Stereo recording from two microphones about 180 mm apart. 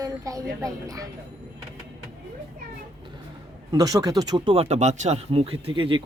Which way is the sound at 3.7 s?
20° right (ahead or behind).